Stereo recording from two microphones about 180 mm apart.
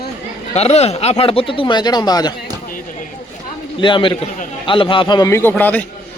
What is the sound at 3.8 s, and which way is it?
A man's voice, 25° left (ahead or behind).